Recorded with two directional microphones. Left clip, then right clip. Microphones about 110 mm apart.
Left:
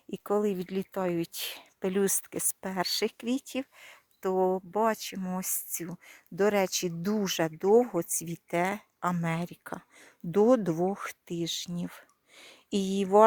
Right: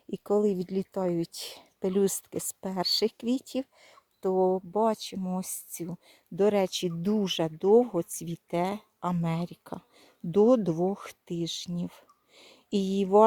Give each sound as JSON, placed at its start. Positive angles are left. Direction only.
{"t": 0.1, "sound": "a sound", "side_deg": -20}
{"t": 0.4, "sound": "speech", "side_deg": -20}
{"t": 4.4, "sound": "speech", "side_deg": 20}
{"t": 4.8, "sound": "speech", "side_deg": -5}